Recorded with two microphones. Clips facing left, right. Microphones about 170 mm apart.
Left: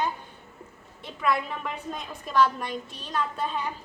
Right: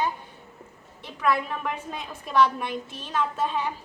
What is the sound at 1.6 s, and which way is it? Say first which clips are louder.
A woman's voice: right 2 dB; 5° right (ahead or behind).